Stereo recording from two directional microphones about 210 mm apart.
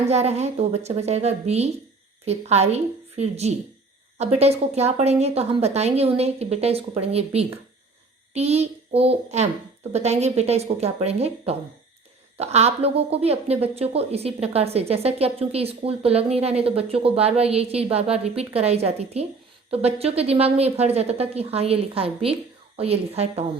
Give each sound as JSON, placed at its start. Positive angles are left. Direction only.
{"t": 0.1, "sound": "a woman's voice", "side_deg": -30}